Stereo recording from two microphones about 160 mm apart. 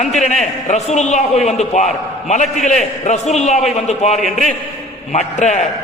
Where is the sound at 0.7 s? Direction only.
45° left (ahead or behind).